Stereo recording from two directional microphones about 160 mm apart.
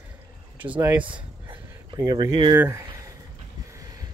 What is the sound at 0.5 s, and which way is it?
Speech, 10° right (ahead or behind).